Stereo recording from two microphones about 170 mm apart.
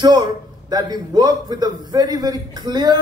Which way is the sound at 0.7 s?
25° right (ahead or behind).